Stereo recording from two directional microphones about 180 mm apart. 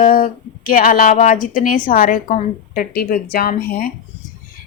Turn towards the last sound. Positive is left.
turn(degrees=55)  # may be behind; listen again after turning